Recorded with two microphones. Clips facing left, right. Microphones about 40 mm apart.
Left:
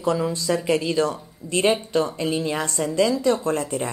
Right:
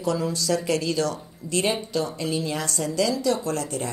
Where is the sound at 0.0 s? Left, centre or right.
Left.